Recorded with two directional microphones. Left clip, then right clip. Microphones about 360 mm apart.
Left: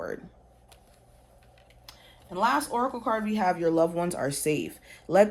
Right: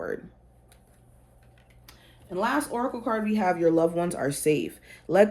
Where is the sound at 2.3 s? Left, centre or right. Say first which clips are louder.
Left 2 dB; left.